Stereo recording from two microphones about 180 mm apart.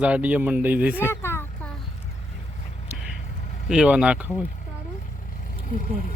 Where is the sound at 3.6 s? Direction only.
5° right (ahead or behind).